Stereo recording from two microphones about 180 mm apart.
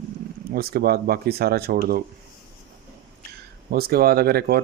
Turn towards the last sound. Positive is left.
turn(degrees=-60)  # may be behind; listen again after turning